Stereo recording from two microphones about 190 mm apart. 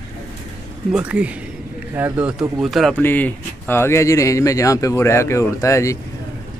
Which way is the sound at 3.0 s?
10° left (ahead or behind).